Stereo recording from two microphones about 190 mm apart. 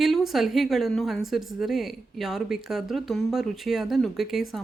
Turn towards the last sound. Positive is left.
turn(degrees=0)  # may be behind; listen again after turning